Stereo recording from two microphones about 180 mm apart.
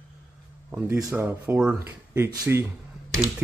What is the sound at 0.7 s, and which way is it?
Speech, 10° right (ahead or behind).